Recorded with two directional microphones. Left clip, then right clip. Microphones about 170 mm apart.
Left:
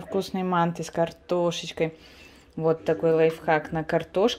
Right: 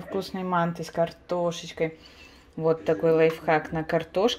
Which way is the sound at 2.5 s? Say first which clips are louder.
Even; 20° left (ahead or behind).